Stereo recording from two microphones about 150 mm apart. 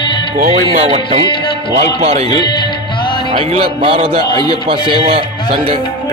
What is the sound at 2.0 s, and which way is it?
Music, 45° right (ahead or behind).